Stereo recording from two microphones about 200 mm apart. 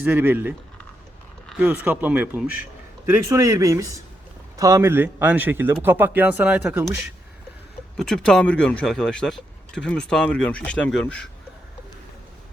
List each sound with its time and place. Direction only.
0.0 s speech: 10° right (ahead or behind)
7.9 s speech: 5° left (ahead or behind)